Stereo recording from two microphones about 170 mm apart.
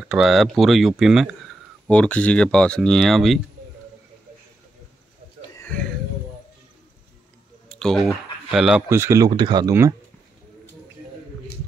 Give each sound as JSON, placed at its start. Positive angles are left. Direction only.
{"t": 0.1, "sound": "speech", "side_deg": 0}
{"t": 5.6, "sound": "a sound", "side_deg": 5}
{"t": 7.6, "sound": "speech", "side_deg": 5}
{"t": 8.8, "sound": "speech", "side_deg": -15}